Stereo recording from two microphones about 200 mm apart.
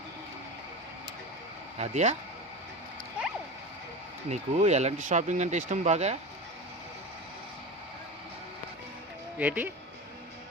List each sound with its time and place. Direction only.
1.8 s speech: 35° right (ahead or behind)
4.3 s speech: 35° right (ahead or behind)
9.4 s speech: 10° right (ahead or behind)